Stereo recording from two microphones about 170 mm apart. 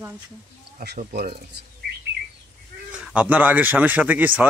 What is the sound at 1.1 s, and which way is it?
Speech, 65° right (ahead or behind).